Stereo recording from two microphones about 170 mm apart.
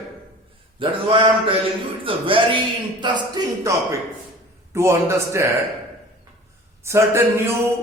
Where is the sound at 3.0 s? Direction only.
25° right (ahead or behind).